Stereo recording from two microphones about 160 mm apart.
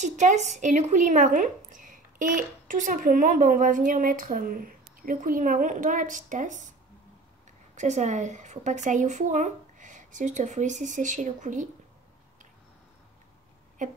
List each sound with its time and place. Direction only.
0.0 s a woman's voice: 50° right (ahead or behind)
7.7 s speech: 50° right (ahead or behind)
13.8 s speech: 50° right (ahead or behind)